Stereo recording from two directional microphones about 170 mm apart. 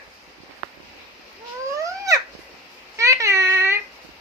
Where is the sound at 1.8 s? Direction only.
20° right (ahead or behind).